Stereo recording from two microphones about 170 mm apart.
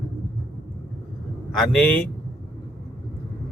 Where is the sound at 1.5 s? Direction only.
5° left (ahead or behind).